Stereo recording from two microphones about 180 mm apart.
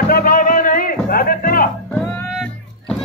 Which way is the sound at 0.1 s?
50° left (ahead or behind).